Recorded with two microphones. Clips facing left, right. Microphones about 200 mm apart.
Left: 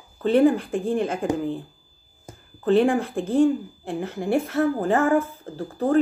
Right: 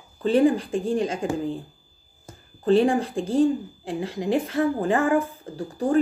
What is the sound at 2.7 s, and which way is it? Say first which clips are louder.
Speech: even; 35° right (ahead or behind).